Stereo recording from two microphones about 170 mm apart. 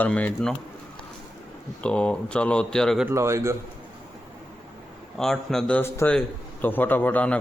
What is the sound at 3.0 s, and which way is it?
Speech, 15° right (ahead or behind).